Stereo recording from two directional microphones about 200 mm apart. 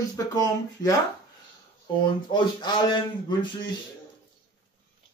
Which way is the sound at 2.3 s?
20° left (ahead or behind).